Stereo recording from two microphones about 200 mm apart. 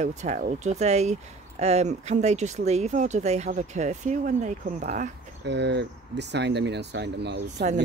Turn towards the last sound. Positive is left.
turn(degrees=-55)  # may be behind; listen again after turning